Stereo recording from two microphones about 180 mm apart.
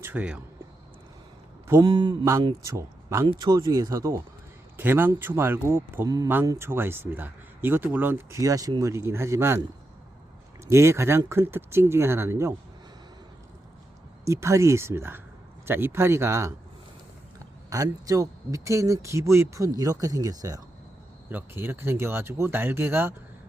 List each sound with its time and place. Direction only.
0.0 s speech: 10° right (ahead or behind)
1.6 s speech: 20° right (ahead or behind)
10.7 s speech: 15° right (ahead or behind)
14.3 s speech: 15° right (ahead or behind)
17.7 s speech: 20° right (ahead or behind)